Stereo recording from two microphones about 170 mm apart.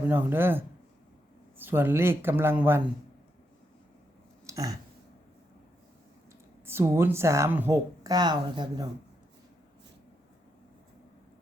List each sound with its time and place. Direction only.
0.1 s speech: 10° right (ahead or behind)
4.4 s a sound: 20° right (ahead or behind)
6.7 s speech: 15° right (ahead or behind)